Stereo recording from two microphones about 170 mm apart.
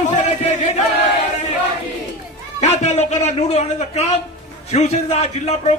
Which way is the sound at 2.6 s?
40° left (ahead or behind).